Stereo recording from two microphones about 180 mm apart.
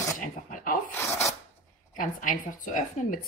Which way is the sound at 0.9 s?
15° left (ahead or behind).